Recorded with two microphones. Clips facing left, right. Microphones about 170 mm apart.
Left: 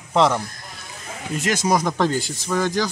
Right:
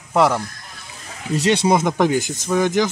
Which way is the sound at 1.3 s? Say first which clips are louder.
Right 4 dB; 25° right (ahead or behind).